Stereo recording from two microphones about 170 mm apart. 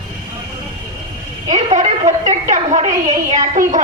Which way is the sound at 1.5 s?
40° right (ahead or behind).